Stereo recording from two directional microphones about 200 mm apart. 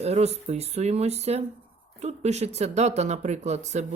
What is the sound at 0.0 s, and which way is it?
Speech, 30° right (ahead or behind).